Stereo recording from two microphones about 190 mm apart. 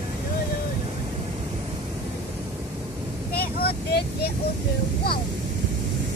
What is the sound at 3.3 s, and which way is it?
Vehicle, 55° left (ahead or behind).